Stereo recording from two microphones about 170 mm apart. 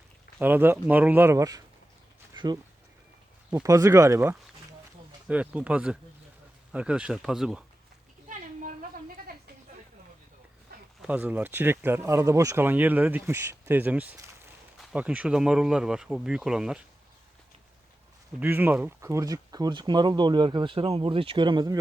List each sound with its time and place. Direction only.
0.3 s speech: 10° right (ahead or behind)
2.3 s a sound: 25° right (ahead or behind)
3.5 s speech: 20° right (ahead or behind)
11.0 s speech: 10° right (ahead or behind)
18.3 s speech: 10° right (ahead or behind)